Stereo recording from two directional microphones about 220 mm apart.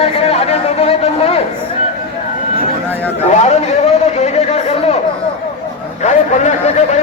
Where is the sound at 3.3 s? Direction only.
30° left (ahead or behind).